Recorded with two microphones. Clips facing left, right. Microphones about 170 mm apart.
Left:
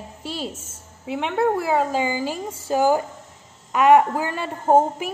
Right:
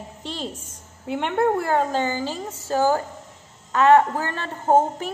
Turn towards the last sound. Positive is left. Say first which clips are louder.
# left 1 dB
turn(degrees=10)  # may be behind; listen again after turning